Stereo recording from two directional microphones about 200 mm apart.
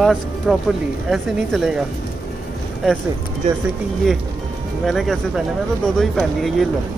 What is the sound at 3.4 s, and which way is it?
Speech, 35° right (ahead or behind).